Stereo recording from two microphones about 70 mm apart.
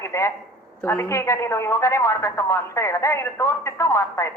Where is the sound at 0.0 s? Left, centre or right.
Left.